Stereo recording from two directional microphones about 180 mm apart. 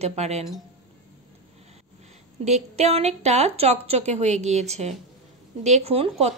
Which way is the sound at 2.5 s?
40° right (ahead or behind).